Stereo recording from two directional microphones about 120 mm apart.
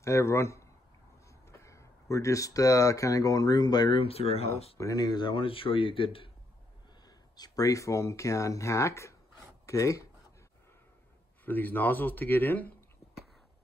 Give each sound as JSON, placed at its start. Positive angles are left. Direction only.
{"t": 0.0, "sound": "a man's voice", "side_deg": 25}
{"t": 4.0, "sound": "speech", "side_deg": 55}
{"t": 4.7, "sound": "speech", "side_deg": 30}
{"t": 7.1, "sound": "a man's voice", "side_deg": 35}
{"t": 11.4, "sound": "a man's voice", "side_deg": 15}